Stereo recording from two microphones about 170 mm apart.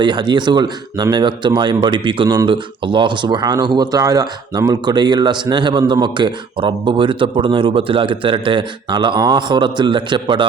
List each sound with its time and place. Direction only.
0.0 s speech: 25° right (ahead or behind)